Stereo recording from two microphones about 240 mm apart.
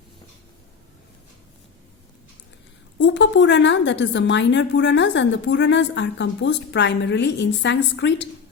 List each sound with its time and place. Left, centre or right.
3.0 s a woman's voice: left